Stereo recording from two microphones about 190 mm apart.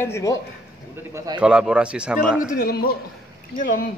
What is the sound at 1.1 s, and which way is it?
Speech, 20° right (ahead or behind).